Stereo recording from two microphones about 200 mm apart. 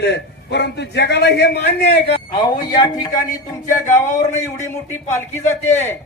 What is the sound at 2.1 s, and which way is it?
A man's voice, 20° left (ahead or behind).